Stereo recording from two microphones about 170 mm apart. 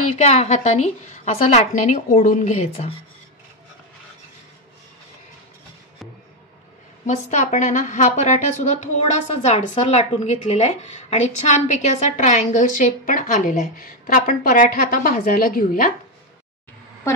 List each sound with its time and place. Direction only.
0.2 s a woman's voice: 40° left (ahead or behind)
7.1 s a woman's voice: 45° left (ahead or behind)